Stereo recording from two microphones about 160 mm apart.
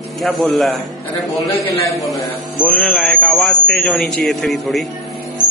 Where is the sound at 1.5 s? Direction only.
20° left (ahead or behind).